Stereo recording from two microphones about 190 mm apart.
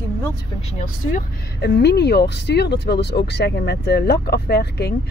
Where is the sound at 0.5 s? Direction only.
35° left (ahead or behind).